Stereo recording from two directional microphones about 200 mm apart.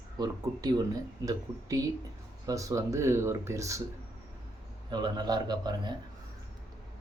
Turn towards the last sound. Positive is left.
turn(degrees=-20)  # may be behind; listen again after turning